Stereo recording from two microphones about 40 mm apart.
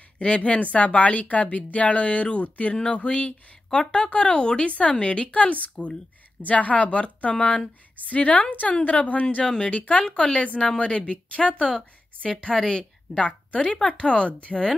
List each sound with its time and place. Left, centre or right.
0.2 s speech: left
2.7 s a woman's voice: left
8.1 s speech: left
10.0 s a woman's voice: left
13.2 s a woman's voice: left